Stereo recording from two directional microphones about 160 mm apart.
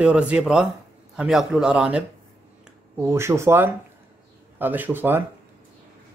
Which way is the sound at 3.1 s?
15° right (ahead or behind).